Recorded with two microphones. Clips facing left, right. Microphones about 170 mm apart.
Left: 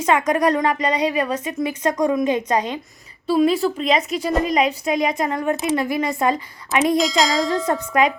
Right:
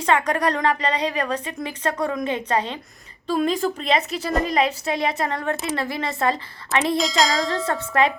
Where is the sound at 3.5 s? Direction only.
35° right (ahead or behind).